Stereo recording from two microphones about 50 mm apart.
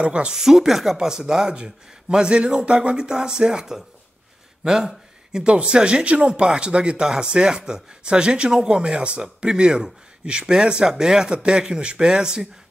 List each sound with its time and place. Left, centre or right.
0.0 s speech: right
0.4 s a man's voice: centre
4.6 s a sound: centre
5.4 s a man's voice: right